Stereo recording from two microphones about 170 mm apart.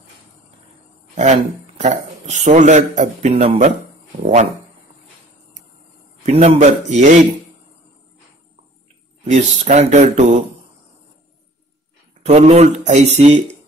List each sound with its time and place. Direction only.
1.1 s a man's voice: 45° right (ahead or behind)
6.2 s a man's voice: 40° right (ahead or behind)
9.2 s speech: 40° right (ahead or behind)
12.3 s speech: 40° right (ahead or behind)